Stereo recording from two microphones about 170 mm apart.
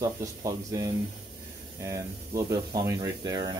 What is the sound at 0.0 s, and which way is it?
Speech, 20° right (ahead or behind).